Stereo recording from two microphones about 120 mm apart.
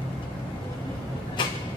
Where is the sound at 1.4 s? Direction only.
40° left (ahead or behind).